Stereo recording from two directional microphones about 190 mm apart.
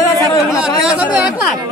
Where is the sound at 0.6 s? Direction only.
5° right (ahead or behind).